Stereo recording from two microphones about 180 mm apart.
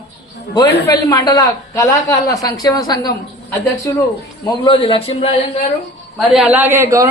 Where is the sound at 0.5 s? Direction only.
20° left (ahead or behind).